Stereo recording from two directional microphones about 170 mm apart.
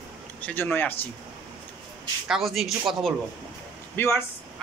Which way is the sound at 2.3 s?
Centre (ahead or behind).